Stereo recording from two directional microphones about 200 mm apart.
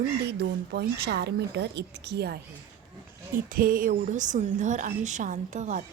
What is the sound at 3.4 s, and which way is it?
A woman's voice, 45° right (ahead or behind).